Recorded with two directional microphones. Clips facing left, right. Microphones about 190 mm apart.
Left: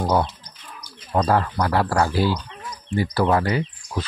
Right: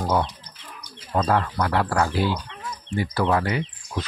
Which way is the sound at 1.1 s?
35° left (ahead or behind).